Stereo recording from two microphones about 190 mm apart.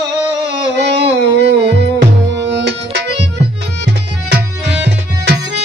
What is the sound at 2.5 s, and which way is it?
Tabla, 65° right (ahead or behind).